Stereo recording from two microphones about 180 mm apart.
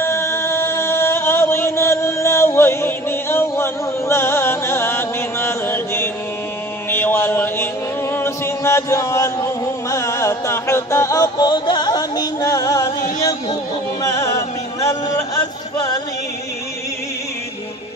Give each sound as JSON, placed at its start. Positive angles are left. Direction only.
{"t": 0.0, "sound": "music", "side_deg": 15}
{"t": 6.9, "sound": "mantra", "side_deg": 10}
{"t": 8.1, "sound": "chant", "side_deg": 15}
{"t": 13.2, "sound": "a sound", "side_deg": 20}
{"t": 14.1, "sound": "music", "side_deg": 20}